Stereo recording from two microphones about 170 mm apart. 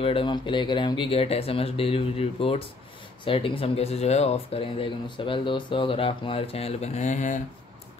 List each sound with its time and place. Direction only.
0.0 s speech: 30° left (ahead or behind)